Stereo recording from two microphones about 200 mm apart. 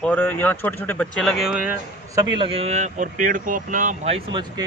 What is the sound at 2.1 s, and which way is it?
Speech, 20° right (ahead or behind).